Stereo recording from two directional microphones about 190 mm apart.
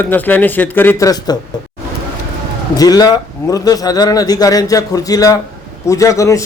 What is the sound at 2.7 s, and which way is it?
A man's voice, 20° left (ahead or behind).